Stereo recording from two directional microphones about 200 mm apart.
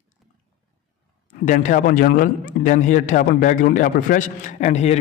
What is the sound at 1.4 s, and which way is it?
A man's voice, 40° left (ahead or behind).